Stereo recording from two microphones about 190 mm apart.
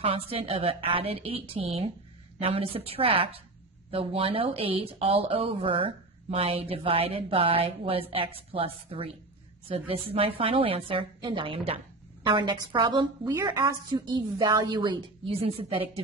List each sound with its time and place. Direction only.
0.0 s a woman's voice: 30° right (ahead or behind)